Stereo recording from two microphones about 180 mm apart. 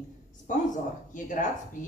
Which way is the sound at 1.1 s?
45° left (ahead or behind).